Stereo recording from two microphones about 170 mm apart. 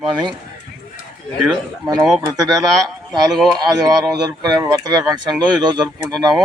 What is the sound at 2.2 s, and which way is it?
Speech, 20° right (ahead or behind).